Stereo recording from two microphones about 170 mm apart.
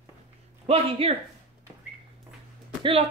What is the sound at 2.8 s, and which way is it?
Speech, 35° right (ahead or behind).